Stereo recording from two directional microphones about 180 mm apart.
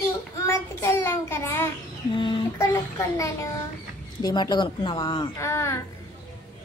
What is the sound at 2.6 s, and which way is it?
A child's voice, 15° left (ahead or behind).